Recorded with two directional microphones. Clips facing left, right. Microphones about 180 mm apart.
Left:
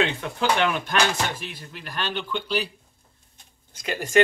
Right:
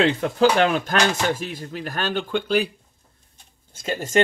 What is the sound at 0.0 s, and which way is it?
Speech, 40° right (ahead or behind).